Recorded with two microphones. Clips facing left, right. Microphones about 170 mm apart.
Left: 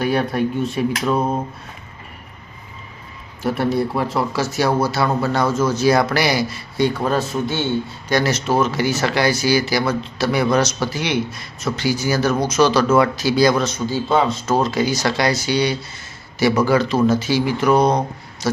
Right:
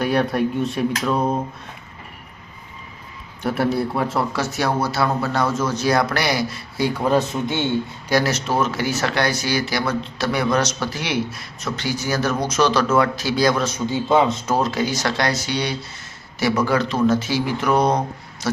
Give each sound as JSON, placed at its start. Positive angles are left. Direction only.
{"t": 0.0, "sound": "speech", "side_deg": 0}
{"t": 3.4, "sound": "speech", "side_deg": 0}
{"t": 7.0, "sound": "a man's voice", "side_deg": -15}
{"t": 8.1, "sound": "speech", "side_deg": 0}
{"t": 13.7, "sound": "a man's voice", "side_deg": -15}
{"t": 14.5, "sound": "speech", "side_deg": 0}